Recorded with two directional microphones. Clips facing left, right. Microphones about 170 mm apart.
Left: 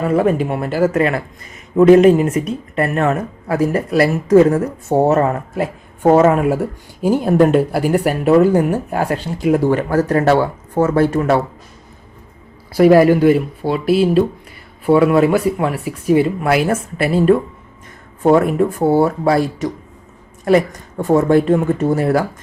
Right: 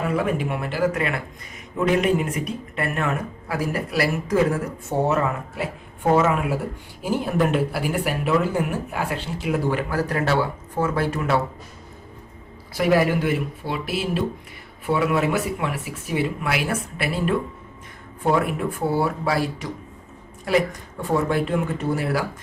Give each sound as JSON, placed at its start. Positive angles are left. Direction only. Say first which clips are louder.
{"t": 0.1, "sound": "speech", "louder": "left 8 dB", "side_deg": 40}
{"t": 12.7, "sound": "speech", "louder": "left 10 dB", "side_deg": 40}
{"t": 20.4, "sound": "a woman's voice", "louder": "left 7 dB", "side_deg": 50}